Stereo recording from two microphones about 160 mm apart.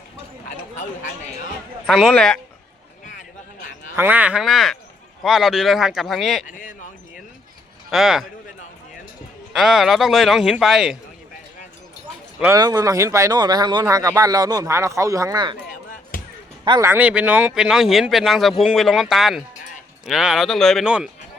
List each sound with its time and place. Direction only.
1.9 s speech: centre (ahead or behind)
3.9 s speech: 10° right (ahead or behind)
6.5 s speech: 55° left (ahead or behind)
7.9 s speech: centre (ahead or behind)
9.5 s speech: centre (ahead or behind)
12.5 s speech: 25° right (ahead or behind)
16.1 s basketball bounce: 60° left (ahead or behind)
16.8 s speech: 10° right (ahead or behind)